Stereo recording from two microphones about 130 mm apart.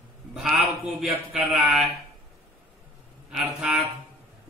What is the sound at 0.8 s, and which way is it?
Speech, centre (ahead or behind).